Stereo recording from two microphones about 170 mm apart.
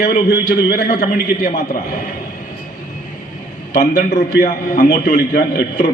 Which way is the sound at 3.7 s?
50° left (ahead or behind).